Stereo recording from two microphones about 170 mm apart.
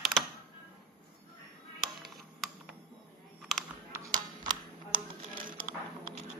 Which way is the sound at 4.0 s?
25° right (ahead or behind).